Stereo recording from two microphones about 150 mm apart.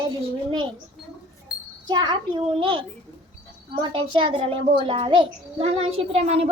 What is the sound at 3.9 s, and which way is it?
A child's voice, 35° right (ahead or behind).